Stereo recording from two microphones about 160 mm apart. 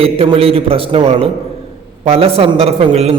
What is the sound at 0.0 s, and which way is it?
A man's voice, 35° right (ahead or behind).